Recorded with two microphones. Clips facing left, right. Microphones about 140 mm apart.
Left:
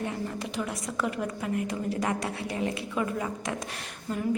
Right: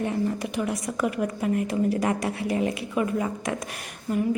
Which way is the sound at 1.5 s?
25° left (ahead or behind).